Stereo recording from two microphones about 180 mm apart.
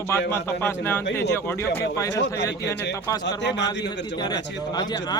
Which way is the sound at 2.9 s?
20° left (ahead or behind).